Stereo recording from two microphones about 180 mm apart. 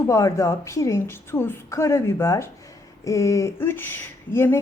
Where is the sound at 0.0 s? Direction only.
15° left (ahead or behind).